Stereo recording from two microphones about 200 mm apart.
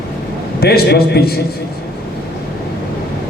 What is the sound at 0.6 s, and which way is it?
Speech, 50° left (ahead or behind).